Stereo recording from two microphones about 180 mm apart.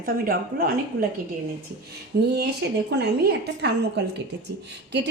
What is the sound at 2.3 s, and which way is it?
A woman's voice, 65° right (ahead or behind).